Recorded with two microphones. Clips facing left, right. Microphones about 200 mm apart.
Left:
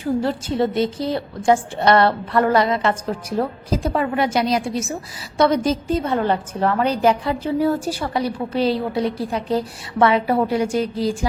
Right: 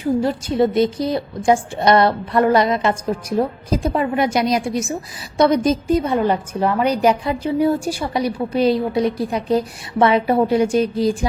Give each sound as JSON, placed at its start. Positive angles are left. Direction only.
{"t": 0.2, "sound": "a woman's voice", "side_deg": -15}